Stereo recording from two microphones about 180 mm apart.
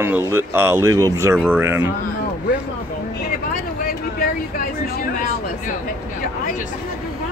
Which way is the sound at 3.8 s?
55° left (ahead or behind).